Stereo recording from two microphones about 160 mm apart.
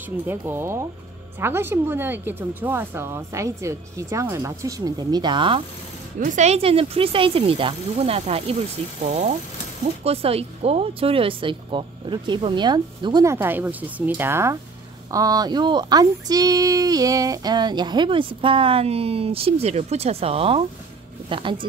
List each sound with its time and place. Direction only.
0.3 s speech: 15° right (ahead or behind); by 5.6 s 30° right (ahead or behind)
6.1 s speech: 50° right (ahead or behind); by 21.5 s 30° right (ahead or behind)